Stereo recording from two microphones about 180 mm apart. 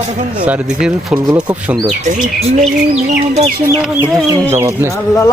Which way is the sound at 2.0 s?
40° right (ahead or behind).